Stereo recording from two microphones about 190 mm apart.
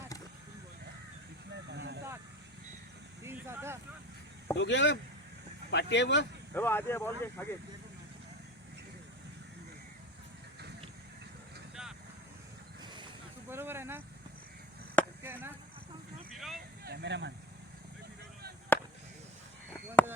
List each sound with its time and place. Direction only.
1.5 s a sound: 65° right (ahead or behind)
3.2 s vehicle: 15° right (ahead or behind)
4.5 s speech: 70° left (ahead or behind)
6.5 s speech: 10° left (ahead or behind)
11.7 s vehicle: 5° right (ahead or behind)
12.8 s vehicle: 25° right (ahead or behind)
13.5 s vehicle: 10° right (ahead or behind)
15.2 s chop: 10° right (ahead or behind)
16.3 s a sound: centre (ahead or behind)
16.8 s a sound: 60° right (ahead or behind)
18.7 s chop: 10° left (ahead or behind)
20.0 s chop: 10° left (ahead or behind)